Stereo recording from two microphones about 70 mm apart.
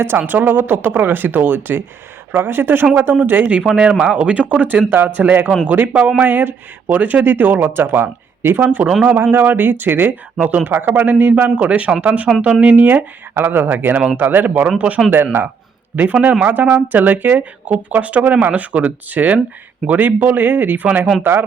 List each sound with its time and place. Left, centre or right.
0.2 s speech: right
3.6 s speech: centre; by 8.6 s right
8.6 s speech: right